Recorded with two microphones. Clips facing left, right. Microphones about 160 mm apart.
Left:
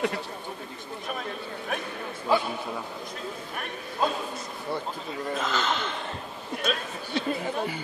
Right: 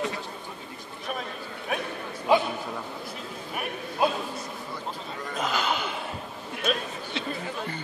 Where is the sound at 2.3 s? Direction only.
15° right (ahead or behind).